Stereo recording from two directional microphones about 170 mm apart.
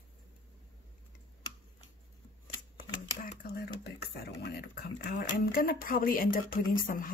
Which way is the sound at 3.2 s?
65° left (ahead or behind).